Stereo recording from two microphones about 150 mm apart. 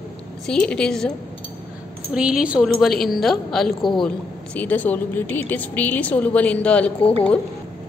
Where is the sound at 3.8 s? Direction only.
30° left (ahead or behind).